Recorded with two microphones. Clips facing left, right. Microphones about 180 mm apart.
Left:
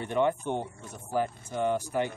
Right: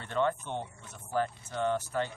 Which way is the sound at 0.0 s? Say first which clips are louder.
Left 4 dB; 15° left (ahead or behind).